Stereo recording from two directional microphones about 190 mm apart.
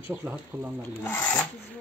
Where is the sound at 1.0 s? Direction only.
10° left (ahead or behind).